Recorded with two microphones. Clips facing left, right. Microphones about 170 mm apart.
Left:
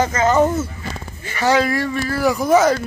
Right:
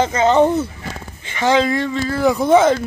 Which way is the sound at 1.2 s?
20° right (ahead or behind).